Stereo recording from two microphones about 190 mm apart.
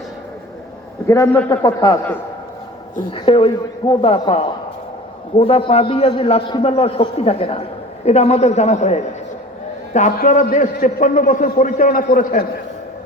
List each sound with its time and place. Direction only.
1.0 s a man's voice: 15° left (ahead or behind)
3.1 s a man's voice: 30° left (ahead or behind); by 12.5 s 45° left (ahead or behind)